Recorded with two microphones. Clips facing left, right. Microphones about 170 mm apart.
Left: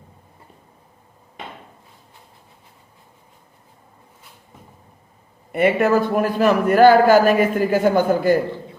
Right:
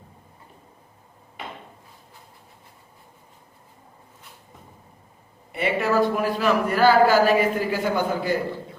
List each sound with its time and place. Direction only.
5.5 s a man's voice: 50° left (ahead or behind)